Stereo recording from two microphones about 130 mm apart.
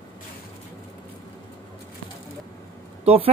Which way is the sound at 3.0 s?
50° right (ahead or behind).